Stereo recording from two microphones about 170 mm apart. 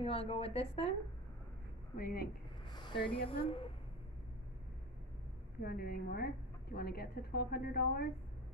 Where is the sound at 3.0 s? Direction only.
30° left (ahead or behind).